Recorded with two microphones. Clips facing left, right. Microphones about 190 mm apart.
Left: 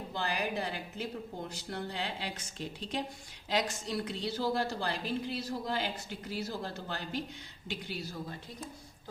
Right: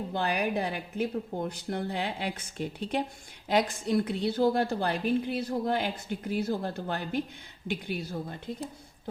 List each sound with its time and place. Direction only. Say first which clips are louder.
0.1 s a woman's voice: right 5 dB; 60° right (ahead or behind)